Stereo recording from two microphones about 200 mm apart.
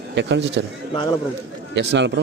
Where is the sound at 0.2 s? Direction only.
60° right (ahead or behind).